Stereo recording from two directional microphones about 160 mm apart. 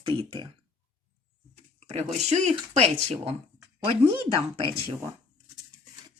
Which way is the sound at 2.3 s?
45° right (ahead or behind).